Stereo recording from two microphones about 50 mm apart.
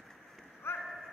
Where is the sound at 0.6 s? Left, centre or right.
Left.